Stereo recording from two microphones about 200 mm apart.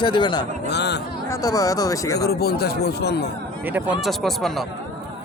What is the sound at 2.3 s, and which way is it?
Speech, 50° left (ahead or behind).